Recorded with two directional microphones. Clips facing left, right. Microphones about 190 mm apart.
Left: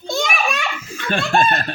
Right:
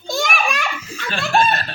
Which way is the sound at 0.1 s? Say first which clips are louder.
Even; centre (ahead or behind).